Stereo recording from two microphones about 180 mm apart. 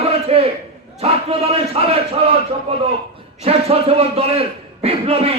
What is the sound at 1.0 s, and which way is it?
A man's voice, 35° right (ahead or behind).